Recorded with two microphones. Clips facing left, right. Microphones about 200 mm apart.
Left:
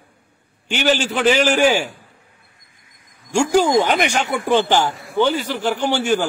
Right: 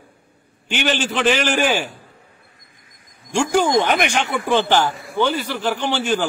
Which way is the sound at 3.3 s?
10° left (ahead or behind).